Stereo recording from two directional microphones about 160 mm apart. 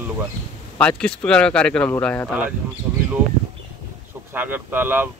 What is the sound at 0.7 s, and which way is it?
A man's voice, 5° left (ahead or behind).